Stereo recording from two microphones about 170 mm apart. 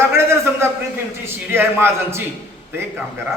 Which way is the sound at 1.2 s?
15° right (ahead or behind).